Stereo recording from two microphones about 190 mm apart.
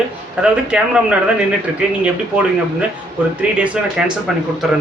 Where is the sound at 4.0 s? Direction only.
5° right (ahead or behind).